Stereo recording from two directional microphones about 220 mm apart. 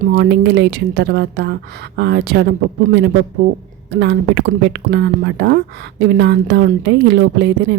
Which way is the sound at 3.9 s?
50° right (ahead or behind).